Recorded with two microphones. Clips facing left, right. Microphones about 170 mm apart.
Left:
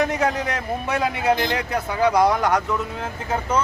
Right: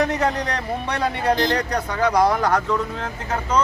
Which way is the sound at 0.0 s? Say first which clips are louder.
Even; centre (ahead or behind).